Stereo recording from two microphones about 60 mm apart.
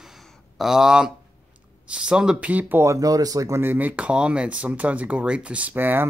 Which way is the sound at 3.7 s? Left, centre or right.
Right.